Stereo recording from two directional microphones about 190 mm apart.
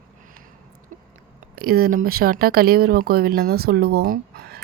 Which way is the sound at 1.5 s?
50° right (ahead or behind).